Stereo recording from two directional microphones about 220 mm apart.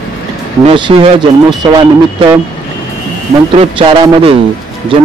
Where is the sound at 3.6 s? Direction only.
20° right (ahead or behind).